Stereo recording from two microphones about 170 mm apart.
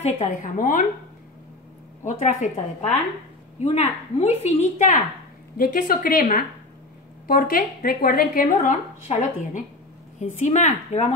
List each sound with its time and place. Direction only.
0.0 s a woman's voice: 50° left (ahead or behind)
2.0 s a woman's voice: 45° left (ahead or behind)
5.6 s a woman's voice: 60° left (ahead or behind); by 11.1 s 40° left (ahead or behind)